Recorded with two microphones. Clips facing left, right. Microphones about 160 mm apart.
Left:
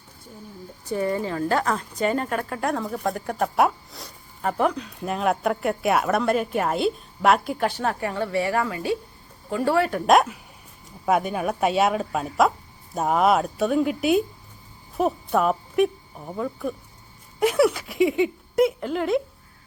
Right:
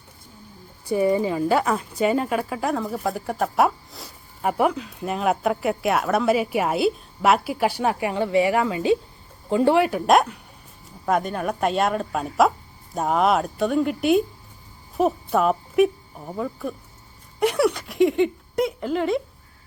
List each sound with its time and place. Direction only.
0.9 s a woman's voice: 10° right (ahead or behind)
10.1 s a woman's voice: centre (ahead or behind)